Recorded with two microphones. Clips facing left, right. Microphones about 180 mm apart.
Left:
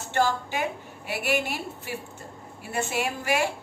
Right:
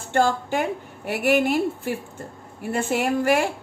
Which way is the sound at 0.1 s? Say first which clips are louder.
Right 4 dB; 50° right (ahead or behind).